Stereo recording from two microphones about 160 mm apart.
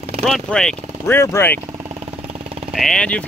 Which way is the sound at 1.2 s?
15° left (ahead or behind).